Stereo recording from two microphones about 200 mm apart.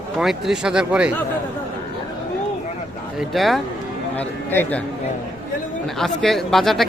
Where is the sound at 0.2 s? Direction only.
Centre (ahead or behind).